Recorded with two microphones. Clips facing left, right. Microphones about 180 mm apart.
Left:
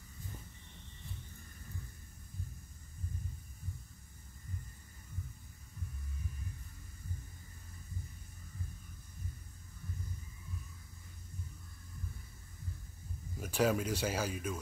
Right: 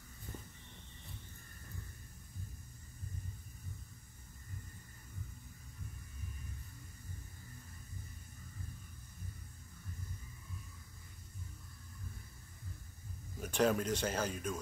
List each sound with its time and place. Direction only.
13.4 s speech: 5° left (ahead or behind)